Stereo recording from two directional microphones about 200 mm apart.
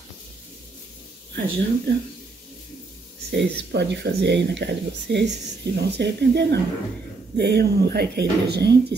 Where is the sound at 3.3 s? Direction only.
55° right (ahead or behind).